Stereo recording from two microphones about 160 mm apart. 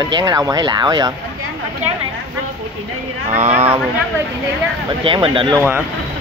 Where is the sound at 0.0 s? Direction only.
25° right (ahead or behind).